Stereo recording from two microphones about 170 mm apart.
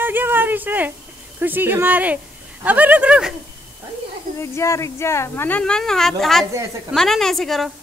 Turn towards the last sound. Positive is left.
turn(degrees=0)  # may be behind; listen again after turning